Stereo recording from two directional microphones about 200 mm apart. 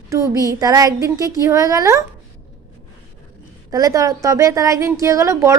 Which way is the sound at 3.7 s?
15° right (ahead or behind).